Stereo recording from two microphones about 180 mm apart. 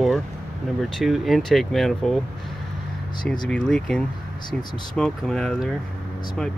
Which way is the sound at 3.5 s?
5° left (ahead or behind).